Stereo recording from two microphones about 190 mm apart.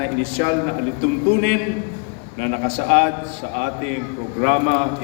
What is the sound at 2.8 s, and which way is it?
A man's voice, 80° right.